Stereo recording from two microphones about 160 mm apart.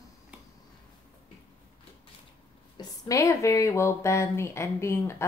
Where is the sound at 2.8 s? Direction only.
20° left (ahead or behind).